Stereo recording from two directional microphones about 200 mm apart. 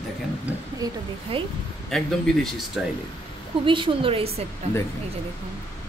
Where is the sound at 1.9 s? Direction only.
Centre (ahead or behind).